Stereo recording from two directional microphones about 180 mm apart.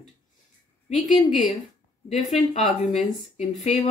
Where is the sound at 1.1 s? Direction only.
40° left (ahead or behind).